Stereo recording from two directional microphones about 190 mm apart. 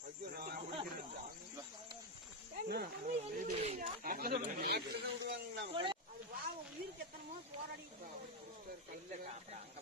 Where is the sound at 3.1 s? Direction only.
40° right (ahead or behind); by 5.1 s 55° right (ahead or behind).